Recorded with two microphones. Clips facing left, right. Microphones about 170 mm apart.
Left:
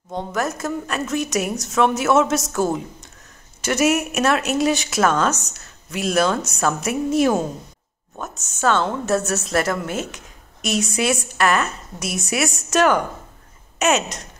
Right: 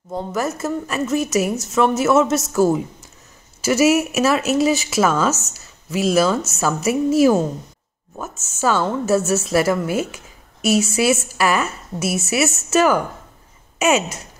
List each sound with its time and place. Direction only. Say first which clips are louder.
0.1 s a woman's voice: right 1 dB; 5° right (ahead or behind)